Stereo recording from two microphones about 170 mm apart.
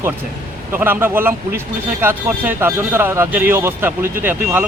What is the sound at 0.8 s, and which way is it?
Speech, 10° right (ahead or behind).